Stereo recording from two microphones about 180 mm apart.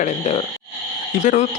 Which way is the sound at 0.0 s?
35° left (ahead or behind).